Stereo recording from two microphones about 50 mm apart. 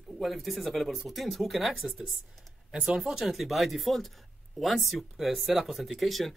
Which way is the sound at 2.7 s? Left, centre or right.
Centre.